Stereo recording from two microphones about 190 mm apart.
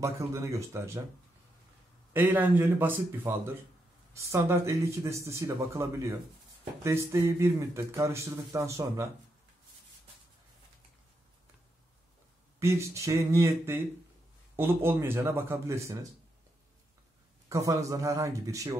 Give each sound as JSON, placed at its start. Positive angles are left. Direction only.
{"t": 0.0, "sound": "speech", "side_deg": -15}
{"t": 2.1, "sound": "speech", "side_deg": -10}
{"t": 12.5, "sound": "speech", "side_deg": -15}
{"t": 17.5, "sound": "speech", "side_deg": -15}